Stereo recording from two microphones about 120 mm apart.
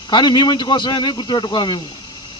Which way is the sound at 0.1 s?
40° left (ahead or behind).